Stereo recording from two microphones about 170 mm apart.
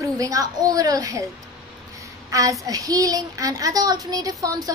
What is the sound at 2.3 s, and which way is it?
A child's voice, 20° right (ahead or behind).